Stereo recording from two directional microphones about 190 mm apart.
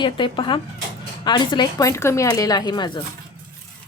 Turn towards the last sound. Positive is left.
turn(degrees=25)  # may be behind; listen again after turning